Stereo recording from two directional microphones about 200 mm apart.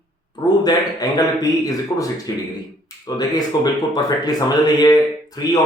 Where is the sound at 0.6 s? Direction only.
20° left (ahead or behind).